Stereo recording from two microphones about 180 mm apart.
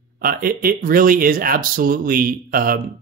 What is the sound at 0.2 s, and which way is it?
Speech, 55° right (ahead or behind).